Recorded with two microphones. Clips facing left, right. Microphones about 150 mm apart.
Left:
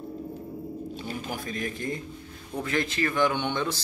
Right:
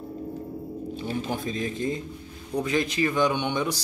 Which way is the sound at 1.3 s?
20° right (ahead or behind).